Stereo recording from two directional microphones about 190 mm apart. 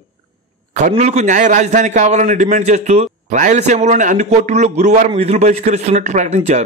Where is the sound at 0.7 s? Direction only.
40° right (ahead or behind).